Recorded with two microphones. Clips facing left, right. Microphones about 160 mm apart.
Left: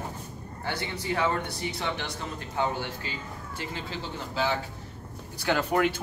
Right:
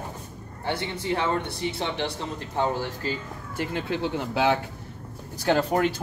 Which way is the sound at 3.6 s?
60° right (ahead or behind).